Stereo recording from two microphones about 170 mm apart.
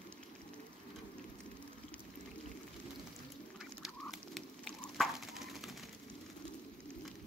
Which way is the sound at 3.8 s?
Centre (ahead or behind).